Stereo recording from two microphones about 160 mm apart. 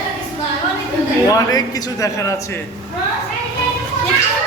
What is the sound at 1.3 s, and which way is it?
A man's voice, 25° left (ahead or behind).